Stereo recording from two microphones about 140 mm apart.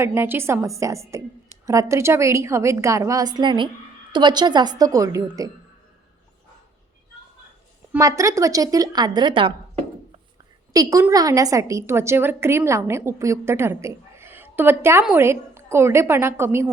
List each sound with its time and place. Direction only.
0.0 s a woman's voice: 15° right (ahead or behind)
7.9 s a woman's voice: 20° right (ahead or behind)
10.7 s a woman's voice: 25° right (ahead or behind)